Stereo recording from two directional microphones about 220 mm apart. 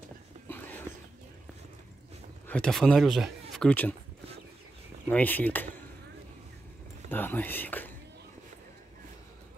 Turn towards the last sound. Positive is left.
turn(degrees=10)  # may be behind; listen again after turning